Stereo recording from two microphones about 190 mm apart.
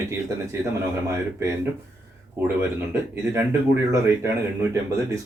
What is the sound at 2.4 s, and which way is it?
Speech, 10° right (ahead or behind).